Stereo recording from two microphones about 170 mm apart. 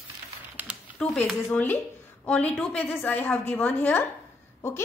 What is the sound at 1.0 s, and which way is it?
A woman's voice, 5° left (ahead or behind).